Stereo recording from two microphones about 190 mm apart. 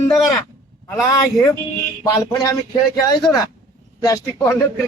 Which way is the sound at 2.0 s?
15° left (ahead or behind).